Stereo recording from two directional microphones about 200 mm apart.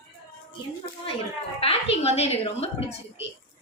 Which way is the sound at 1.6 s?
30° left (ahead or behind).